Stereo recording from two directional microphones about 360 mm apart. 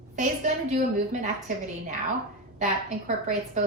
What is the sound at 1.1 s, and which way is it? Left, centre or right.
Speech, centre.